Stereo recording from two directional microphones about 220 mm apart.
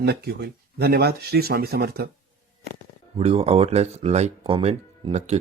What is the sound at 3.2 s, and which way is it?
Speech, 25° right (ahead or behind).